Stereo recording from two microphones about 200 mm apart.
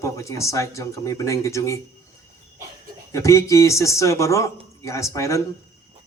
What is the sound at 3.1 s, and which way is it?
Speech, 15° left (ahead or behind).